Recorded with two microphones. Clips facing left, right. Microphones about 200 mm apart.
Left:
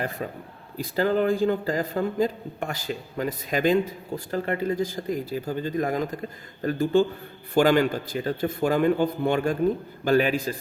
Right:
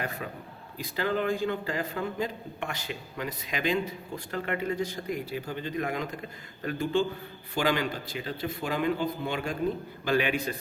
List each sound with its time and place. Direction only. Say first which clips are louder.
0.0 s a man's voice: left 5 dB; 35° left (ahead or behind)